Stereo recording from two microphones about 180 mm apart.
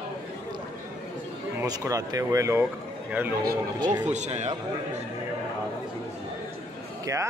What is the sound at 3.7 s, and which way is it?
Speech, 25° right (ahead or behind).